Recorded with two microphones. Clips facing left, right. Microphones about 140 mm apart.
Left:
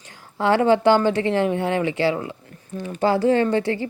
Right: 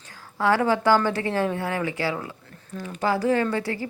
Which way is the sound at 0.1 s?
25° left (ahead or behind).